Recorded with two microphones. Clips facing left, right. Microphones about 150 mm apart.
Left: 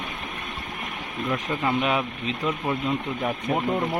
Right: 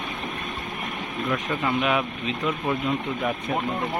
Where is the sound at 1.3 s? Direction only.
30° left (ahead or behind).